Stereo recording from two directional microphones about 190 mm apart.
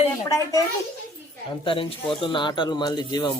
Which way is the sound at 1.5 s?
25° left (ahead or behind).